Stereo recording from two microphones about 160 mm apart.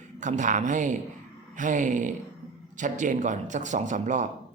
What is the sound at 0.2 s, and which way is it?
A man's voice, 50° right (ahead or behind).